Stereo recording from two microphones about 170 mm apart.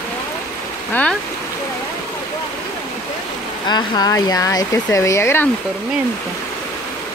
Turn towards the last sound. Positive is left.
turn(degrees=15)  # may be behind; listen again after turning